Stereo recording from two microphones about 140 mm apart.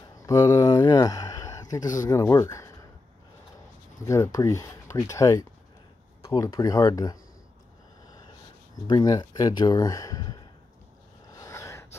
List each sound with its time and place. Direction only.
0.0 s a sound: 25° left (ahead or behind)
2.0 s speech: 20° left (ahead or behind)
4.0 s speech: 25° left (ahead or behind)
8.8 s speech: 25° left (ahead or behind)
11.3 s gasp: 20° left (ahead or behind)